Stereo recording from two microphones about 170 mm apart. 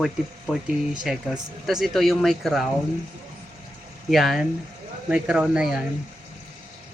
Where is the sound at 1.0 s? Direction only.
5° right (ahead or behind).